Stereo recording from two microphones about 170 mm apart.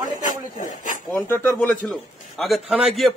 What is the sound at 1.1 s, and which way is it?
A man's voice, 15° left (ahead or behind).